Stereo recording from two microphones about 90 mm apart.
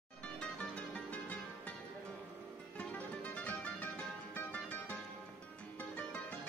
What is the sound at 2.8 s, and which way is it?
Music, 15° left (ahead or behind).